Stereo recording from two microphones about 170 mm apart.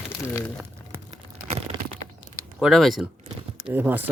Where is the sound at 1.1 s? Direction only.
40° right (ahead or behind).